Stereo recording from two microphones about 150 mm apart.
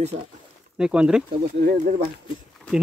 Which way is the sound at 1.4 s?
60° right (ahead or behind).